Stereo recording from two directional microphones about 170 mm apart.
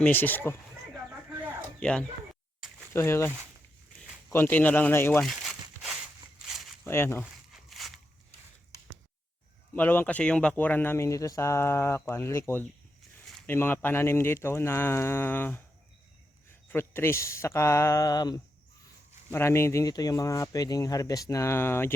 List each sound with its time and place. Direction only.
0.0 s speech: 10° left (ahead or behind)
1.8 s speech: 5° left (ahead or behind)
5.2 s crumpling: centre (ahead or behind)
6.8 s speech: 15° left (ahead or behind)
7.5 s a sound: centre (ahead or behind)
9.7 s speech: 10° left (ahead or behind)